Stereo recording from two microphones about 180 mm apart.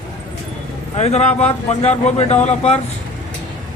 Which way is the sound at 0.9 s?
35° left (ahead or behind).